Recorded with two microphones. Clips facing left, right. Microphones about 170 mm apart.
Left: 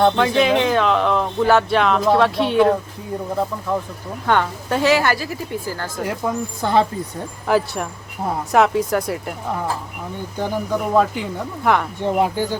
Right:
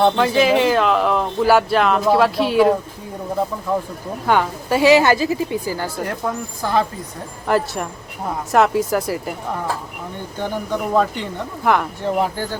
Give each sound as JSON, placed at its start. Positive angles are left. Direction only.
{"t": 0.0, "sound": "speech", "side_deg": 0}
{"t": 4.3, "sound": "speech", "side_deg": -5}
{"t": 6.0, "sound": "speech", "side_deg": 5}
{"t": 6.6, "sound": "speech", "side_deg": 25}
{"t": 7.4, "sound": "speech", "side_deg": 0}
{"t": 10.9, "sound": "speech", "side_deg": 5}
{"t": 12.0, "sound": "speech", "side_deg": 15}